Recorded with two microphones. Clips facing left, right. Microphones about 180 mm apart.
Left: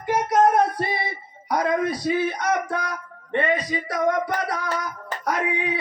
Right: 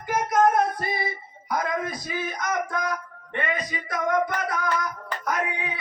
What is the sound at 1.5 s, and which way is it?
Speech, 30° left (ahead or behind).